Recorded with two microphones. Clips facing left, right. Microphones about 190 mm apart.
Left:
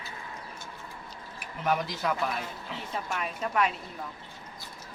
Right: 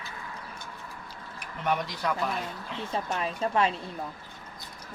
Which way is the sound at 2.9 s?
30° right (ahead or behind).